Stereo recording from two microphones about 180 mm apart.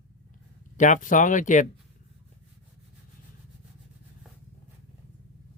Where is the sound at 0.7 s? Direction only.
45° left (ahead or behind).